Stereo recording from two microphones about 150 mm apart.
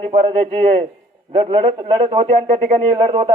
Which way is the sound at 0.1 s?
35° right (ahead or behind).